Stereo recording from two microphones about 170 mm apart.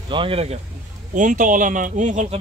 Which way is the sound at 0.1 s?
30° right (ahead or behind).